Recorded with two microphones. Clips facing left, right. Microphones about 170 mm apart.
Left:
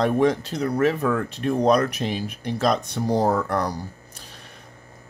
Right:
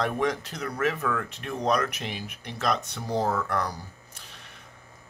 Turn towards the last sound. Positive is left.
turn(degrees=35)  # may be behind; listen again after turning